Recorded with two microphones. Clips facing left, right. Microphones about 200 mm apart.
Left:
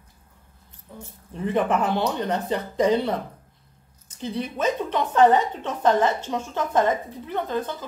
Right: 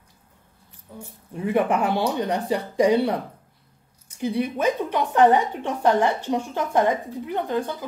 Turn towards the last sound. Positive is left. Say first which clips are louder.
# right 2 dB
turn(degrees=-15)  # may be behind; listen again after turning